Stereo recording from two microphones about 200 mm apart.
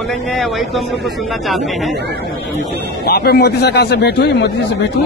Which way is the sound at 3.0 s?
50° left (ahead or behind).